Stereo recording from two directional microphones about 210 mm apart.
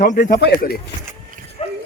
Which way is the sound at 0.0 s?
40° left (ahead or behind).